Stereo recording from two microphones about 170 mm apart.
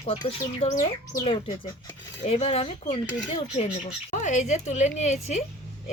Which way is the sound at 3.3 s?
40° left (ahead or behind).